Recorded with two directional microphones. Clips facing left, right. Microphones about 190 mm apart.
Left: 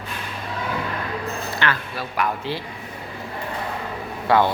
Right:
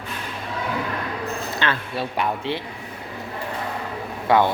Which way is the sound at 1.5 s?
25° right (ahead or behind).